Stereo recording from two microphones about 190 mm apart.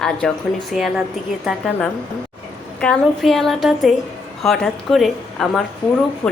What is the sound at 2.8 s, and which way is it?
A woman's voice, 5° left (ahead or behind).